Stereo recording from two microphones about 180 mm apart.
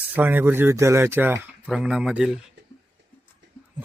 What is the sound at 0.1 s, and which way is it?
A man's voice, 10° right (ahead or behind).